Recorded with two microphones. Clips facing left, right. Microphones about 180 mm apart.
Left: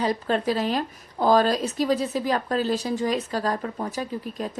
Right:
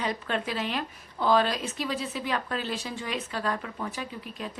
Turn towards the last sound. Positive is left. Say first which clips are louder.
# left 7 dB
turn(degrees=40)  # may be behind; listen again after turning